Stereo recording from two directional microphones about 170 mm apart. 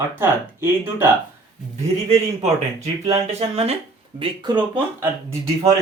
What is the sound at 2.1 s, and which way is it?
Speech, 40° right (ahead or behind).